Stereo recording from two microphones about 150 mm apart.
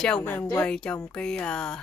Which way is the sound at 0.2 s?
15° left (ahead or behind).